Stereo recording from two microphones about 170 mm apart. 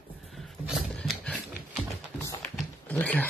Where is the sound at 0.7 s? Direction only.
Centre (ahead or behind).